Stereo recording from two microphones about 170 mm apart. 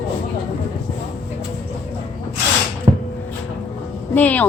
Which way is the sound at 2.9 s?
25° right (ahead or behind).